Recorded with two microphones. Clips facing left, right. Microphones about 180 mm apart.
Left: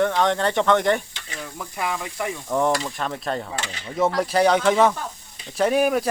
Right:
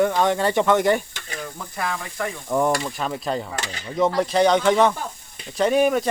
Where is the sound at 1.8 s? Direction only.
15° left (ahead or behind).